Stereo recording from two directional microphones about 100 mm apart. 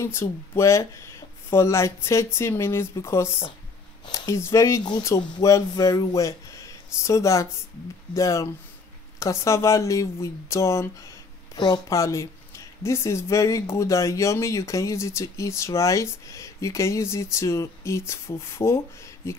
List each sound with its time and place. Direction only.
0.0 s speech: 25° left (ahead or behind)
11.5 s speech: 50° left (ahead or behind)
11.9 s speech: 30° left (ahead or behind)